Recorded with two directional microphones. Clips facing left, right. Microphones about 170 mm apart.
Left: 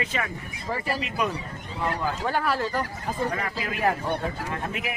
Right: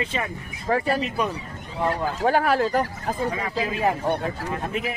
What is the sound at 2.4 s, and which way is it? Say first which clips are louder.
Speech: right 5 dB; 60° right (ahead or behind).